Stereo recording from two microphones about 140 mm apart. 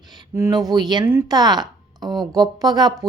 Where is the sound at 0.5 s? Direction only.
30° right (ahead or behind).